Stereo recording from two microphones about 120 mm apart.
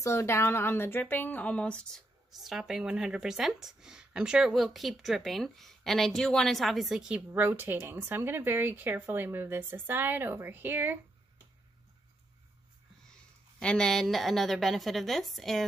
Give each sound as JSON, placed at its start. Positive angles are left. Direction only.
{"t": 0.0, "sound": "speech", "side_deg": 25}
{"t": 7.2, "sound": "speech", "side_deg": -20}
{"t": 13.6, "sound": "speech", "side_deg": 5}